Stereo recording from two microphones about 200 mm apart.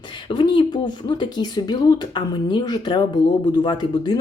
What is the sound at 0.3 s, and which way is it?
Speech, 25° left (ahead or behind).